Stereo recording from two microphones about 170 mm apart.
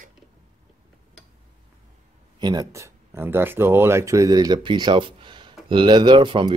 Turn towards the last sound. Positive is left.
turn(degrees=-30)  # may be behind; listen again after turning